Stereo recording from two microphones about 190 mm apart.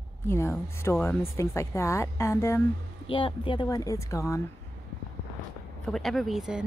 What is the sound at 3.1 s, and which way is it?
Speech, 25° left (ahead or behind).